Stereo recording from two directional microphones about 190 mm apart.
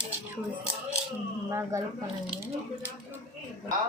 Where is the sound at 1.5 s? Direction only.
15° right (ahead or behind).